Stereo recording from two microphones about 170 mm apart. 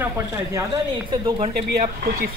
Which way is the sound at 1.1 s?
25° right (ahead or behind).